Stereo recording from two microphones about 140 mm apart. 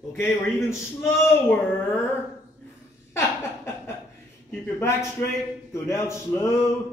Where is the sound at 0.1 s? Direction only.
15° left (ahead or behind).